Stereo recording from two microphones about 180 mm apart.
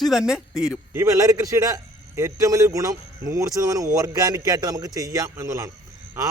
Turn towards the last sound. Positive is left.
turn(degrees=-15)  # may be behind; listen again after turning